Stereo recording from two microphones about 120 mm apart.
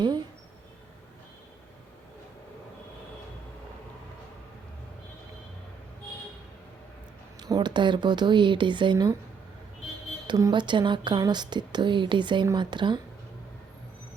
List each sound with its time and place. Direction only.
7.4 s a woman's voice: 35° right (ahead or behind)
10.2 s a woman's voice: 35° right (ahead or behind)